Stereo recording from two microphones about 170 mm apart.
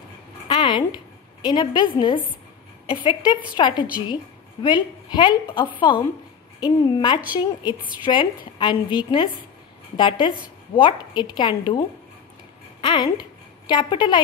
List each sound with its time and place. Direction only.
0.5 s a woman's voice: 30° left (ahead or behind)
12.8 s a woman's voice: 25° left (ahead or behind)